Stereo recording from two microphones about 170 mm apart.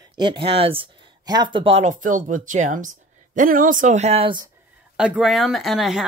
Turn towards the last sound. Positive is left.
turn(degrees=0)  # may be behind; listen again after turning